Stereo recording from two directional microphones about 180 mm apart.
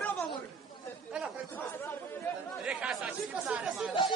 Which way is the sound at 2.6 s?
5° right (ahead or behind).